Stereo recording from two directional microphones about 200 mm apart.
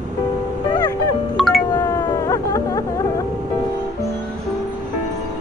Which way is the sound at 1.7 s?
15° left (ahead or behind).